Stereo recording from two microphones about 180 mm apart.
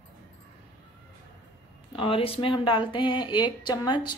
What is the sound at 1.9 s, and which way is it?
A woman's voice, 30° left (ahead or behind).